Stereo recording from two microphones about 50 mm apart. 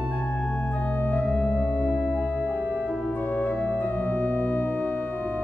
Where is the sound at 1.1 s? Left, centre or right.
Left.